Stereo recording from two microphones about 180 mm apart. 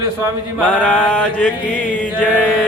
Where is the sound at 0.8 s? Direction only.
5° left (ahead or behind).